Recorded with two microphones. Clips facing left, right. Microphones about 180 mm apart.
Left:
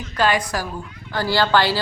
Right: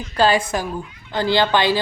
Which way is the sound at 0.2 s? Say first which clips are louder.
Right 3 dB; 30° right (ahead or behind).